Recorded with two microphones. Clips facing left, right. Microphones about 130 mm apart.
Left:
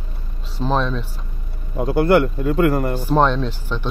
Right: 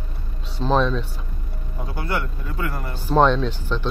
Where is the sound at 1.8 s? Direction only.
65° left (ahead or behind).